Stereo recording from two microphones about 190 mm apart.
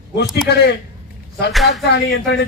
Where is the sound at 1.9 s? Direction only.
60° left (ahead or behind).